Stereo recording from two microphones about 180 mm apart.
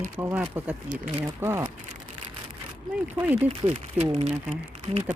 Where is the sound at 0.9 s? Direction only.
45° right (ahead or behind).